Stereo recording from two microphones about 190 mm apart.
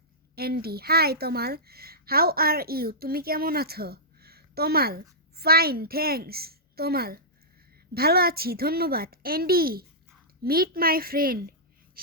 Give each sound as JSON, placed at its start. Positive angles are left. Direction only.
{"t": 0.3, "sound": "speech", "side_deg": -55}